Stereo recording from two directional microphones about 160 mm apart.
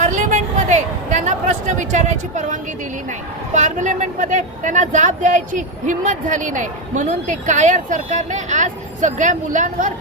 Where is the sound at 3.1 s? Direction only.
50° right (ahead or behind).